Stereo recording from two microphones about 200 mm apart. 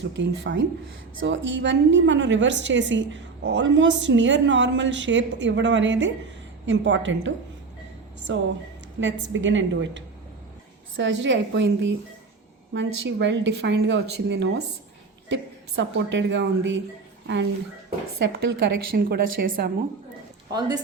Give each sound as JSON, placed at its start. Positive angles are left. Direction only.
{"t": 0.0, "sound": "a woman's voice", "side_deg": -65}
{"t": 18.2, "sound": "a woman's voice", "side_deg": -55}
{"t": 20.5, "sound": "speech", "side_deg": -20}